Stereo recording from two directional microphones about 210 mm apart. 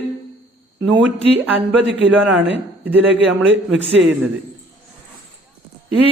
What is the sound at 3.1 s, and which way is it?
Speech, 60° right (ahead or behind).